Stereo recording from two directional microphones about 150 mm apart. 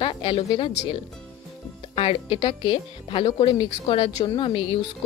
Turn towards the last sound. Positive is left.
turn(degrees=35)  # may be behind; listen again after turning